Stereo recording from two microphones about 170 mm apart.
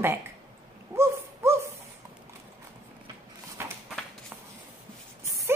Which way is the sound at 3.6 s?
15° right (ahead or behind).